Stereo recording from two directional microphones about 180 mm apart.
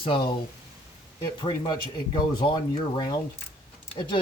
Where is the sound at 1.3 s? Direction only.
25° left (ahead or behind).